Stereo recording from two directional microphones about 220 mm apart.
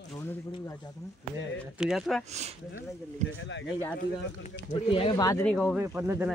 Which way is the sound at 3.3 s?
55° left (ahead or behind).